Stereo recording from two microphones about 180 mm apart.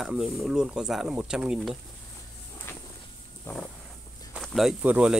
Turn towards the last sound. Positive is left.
turn(degrees=-5)  # may be behind; listen again after turning